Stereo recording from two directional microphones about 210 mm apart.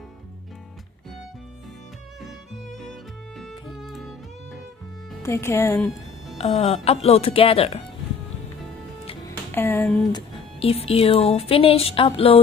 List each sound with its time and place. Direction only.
2.2 s music: centre (ahead or behind)
5.2 s speech: 10° left (ahead or behind)
6.3 s speech: 30° left (ahead or behind)
9.5 s speech: 10° left (ahead or behind)
10.1 s speech: 30° left (ahead or behind)